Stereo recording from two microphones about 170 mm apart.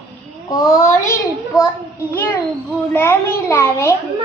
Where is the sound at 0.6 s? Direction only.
20° left (ahead or behind).